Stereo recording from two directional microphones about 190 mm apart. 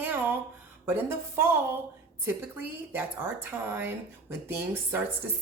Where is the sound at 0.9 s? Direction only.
10° right (ahead or behind).